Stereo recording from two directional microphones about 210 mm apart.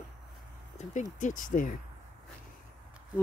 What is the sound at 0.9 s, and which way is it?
Speech, 35° left (ahead or behind).